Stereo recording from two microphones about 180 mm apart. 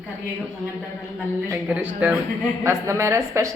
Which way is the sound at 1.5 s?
10° right (ahead or behind).